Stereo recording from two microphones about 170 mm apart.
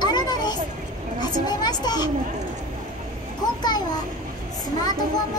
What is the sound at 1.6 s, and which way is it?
Speech, 25° left (ahead or behind).